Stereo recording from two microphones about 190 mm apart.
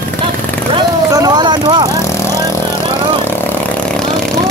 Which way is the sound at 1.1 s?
20° right (ahead or behind).